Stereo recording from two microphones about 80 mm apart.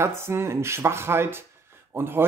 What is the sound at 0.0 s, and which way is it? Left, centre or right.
Speech, right.